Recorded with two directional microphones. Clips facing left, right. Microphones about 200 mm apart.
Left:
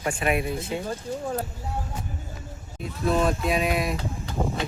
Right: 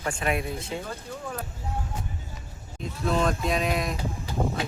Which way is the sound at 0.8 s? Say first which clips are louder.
Left 6 dB; 30° left (ahead or behind).